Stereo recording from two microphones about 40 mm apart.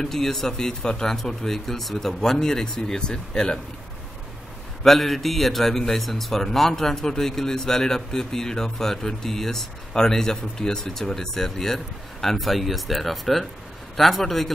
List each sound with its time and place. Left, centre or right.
0.0 s speech: centre
4.8 s a man's voice: centre